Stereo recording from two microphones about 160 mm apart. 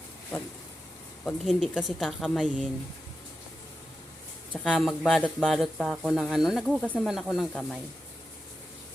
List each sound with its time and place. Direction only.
1.2 s speech: centre (ahead or behind)
4.5 s speech: 5° left (ahead or behind)